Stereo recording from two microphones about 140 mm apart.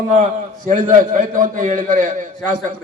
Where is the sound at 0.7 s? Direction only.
70° right (ahead or behind).